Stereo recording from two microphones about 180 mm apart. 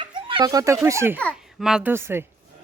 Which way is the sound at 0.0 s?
30° right (ahead or behind).